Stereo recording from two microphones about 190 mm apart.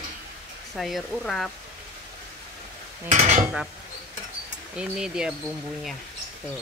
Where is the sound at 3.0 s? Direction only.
40° right (ahead or behind).